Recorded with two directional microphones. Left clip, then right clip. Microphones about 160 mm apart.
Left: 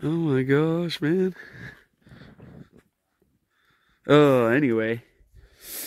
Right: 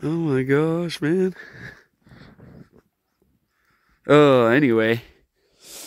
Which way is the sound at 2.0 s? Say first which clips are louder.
Right 1 dB; centre (ahead or behind).